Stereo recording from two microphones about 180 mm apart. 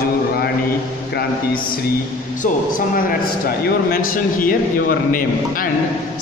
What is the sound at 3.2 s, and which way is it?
A man's voice, 55° left (ahead or behind).